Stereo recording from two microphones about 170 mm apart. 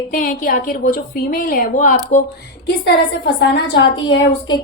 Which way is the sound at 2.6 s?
75° left (ahead or behind).